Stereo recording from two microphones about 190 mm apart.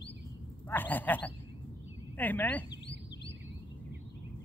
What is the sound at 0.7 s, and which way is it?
Speech, 10° left (ahead or behind).